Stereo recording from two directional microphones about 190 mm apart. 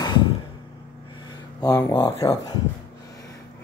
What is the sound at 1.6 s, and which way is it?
Speech, 20° left (ahead or behind).